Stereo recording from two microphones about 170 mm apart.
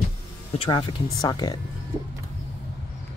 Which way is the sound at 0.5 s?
30° left (ahead or behind).